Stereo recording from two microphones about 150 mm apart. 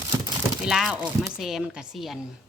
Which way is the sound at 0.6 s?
5° right (ahead or behind).